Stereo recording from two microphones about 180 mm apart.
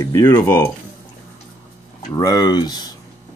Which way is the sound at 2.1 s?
20° left (ahead or behind).